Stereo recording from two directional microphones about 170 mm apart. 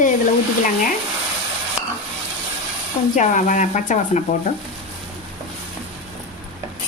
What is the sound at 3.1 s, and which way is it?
A woman's voice, 50° left (ahead or behind).